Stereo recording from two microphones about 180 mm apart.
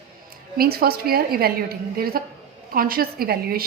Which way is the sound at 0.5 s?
55° right (ahead or behind).